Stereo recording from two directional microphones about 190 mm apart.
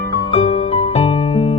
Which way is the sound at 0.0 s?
15° left (ahead or behind).